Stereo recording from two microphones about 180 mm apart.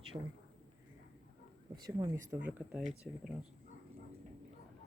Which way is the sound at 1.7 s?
20° right (ahead or behind).